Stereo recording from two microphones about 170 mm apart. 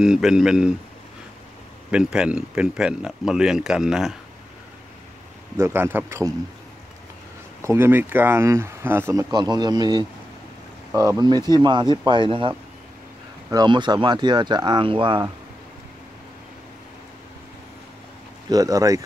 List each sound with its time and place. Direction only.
0.0 s speech: 5° right (ahead or behind)
1.9 s speech: 5° right (ahead or behind)
5.6 s speech: 15° right (ahead or behind)
7.6 s speech: 15° right (ahead or behind)
18.5 s speech: 20° right (ahead or behind)